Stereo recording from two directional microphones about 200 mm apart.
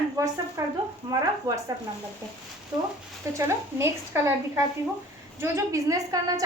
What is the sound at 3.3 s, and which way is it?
A woman's voice, 15° right (ahead or behind).